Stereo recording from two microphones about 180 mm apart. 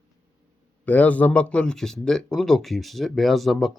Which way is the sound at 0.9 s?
10° left (ahead or behind).